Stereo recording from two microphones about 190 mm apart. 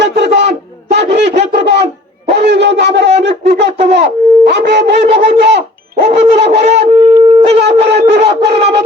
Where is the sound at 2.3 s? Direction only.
60° right (ahead or behind).